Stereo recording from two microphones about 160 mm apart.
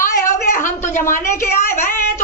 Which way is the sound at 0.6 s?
50° left (ahead or behind).